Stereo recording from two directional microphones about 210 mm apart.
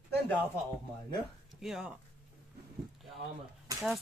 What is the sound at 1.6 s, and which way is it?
Speech, 5° right (ahead or behind).